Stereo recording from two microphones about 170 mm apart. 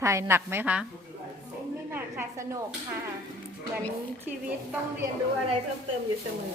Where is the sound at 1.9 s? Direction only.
15° right (ahead or behind).